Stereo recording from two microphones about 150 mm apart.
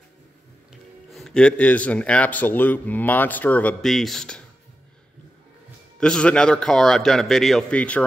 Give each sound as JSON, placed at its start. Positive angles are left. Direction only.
{"t": 1.1, "sound": "speech", "side_deg": 5}
{"t": 5.9, "sound": "a man's voice", "side_deg": 5}